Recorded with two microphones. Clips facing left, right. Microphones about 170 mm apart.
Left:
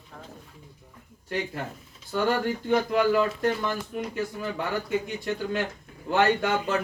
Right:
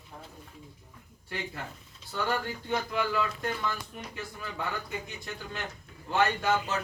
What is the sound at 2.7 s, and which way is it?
A man's voice, 45° left (ahead or behind).